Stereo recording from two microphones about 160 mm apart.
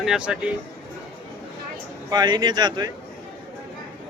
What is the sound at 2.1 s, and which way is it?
Speech, 25° right (ahead or behind).